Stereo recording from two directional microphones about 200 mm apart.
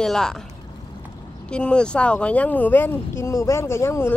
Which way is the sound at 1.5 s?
5° left (ahead or behind).